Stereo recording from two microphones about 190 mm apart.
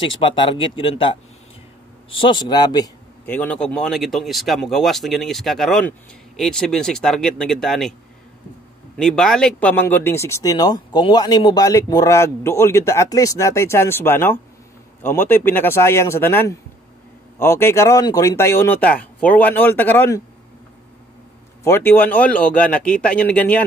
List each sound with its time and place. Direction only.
0.2 s speech: 25° left (ahead or behind)
3.3 s speech: 10° left (ahead or behind)
8.9 s speech: 5° left (ahead or behind)
21.6 s speech: 10° left (ahead or behind)